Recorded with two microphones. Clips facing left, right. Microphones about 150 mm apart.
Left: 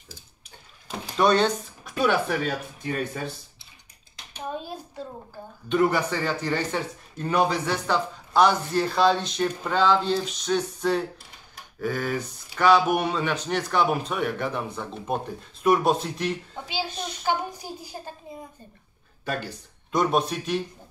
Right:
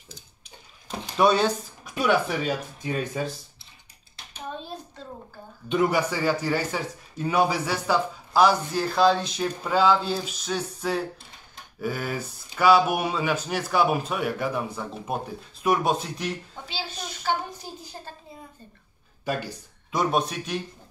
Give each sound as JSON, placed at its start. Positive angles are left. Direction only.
{"t": 1.1, "sound": "a man's voice", "side_deg": -5}
{"t": 2.9, "sound": "speech", "side_deg": 60}
{"t": 4.6, "sound": "a sound", "side_deg": 10}
{"t": 5.7, "sound": "a man's voice", "side_deg": -10}
{"t": 16.6, "sound": "a child's voice", "side_deg": 15}
{"t": 19.2, "sound": "speech", "side_deg": -5}